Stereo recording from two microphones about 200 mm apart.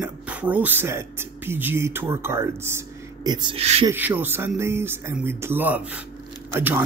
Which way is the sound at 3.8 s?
10° right (ahead or behind).